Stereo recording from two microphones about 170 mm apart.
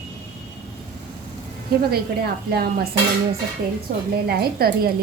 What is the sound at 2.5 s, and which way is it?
Speech, 65° right (ahead or behind).